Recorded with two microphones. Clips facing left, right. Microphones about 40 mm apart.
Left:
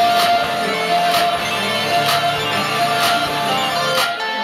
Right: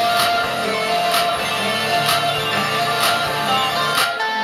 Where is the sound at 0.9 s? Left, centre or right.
Centre.